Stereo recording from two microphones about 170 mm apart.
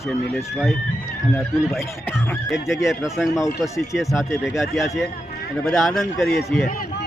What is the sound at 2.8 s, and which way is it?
A man's voice, centre (ahead or behind).